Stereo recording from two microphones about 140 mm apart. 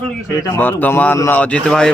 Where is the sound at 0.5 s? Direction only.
15° left (ahead or behind).